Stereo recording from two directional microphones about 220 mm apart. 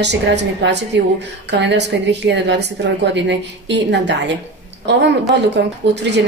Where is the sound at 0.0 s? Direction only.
50° right (ahead or behind).